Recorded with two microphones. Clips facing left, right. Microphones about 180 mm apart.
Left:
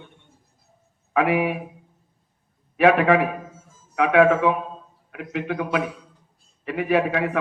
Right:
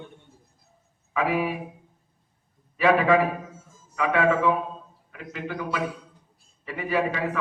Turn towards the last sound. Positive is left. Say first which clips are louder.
# left 5 dB
turn(degrees=65)  # may be behind; listen again after turning